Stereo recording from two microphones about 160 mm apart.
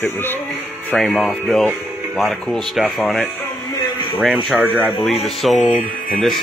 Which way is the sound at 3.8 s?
30° left (ahead or behind).